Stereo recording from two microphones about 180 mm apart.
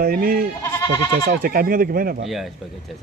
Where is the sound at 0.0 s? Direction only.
55° right (ahead or behind).